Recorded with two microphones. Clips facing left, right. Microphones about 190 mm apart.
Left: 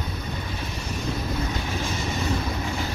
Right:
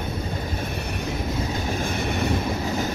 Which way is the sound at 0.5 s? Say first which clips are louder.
Right 3 dB; 60° right (ahead or behind).